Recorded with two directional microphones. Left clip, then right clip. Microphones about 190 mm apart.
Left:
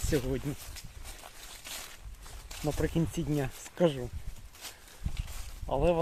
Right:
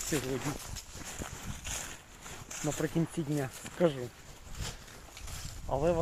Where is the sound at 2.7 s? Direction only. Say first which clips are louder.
Left 1 dB; 35° left (ahead or behind).